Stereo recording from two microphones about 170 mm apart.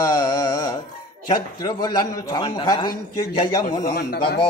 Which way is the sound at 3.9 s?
70° left (ahead or behind).